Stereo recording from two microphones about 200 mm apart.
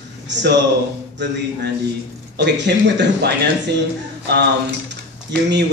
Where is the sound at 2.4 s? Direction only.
60° right (ahead or behind).